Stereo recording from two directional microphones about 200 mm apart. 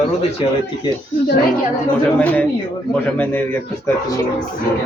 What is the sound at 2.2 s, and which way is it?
Speech, 10° left (ahead or behind).